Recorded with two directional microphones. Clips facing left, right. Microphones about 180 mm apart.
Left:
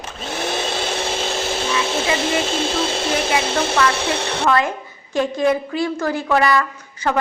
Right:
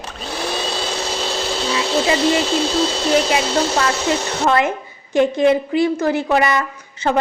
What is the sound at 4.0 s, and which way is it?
Speech, 30° left (ahead or behind).